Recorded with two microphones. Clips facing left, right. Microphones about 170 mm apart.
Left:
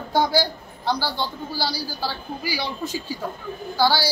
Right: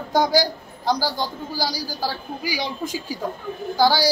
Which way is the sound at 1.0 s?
40° right (ahead or behind).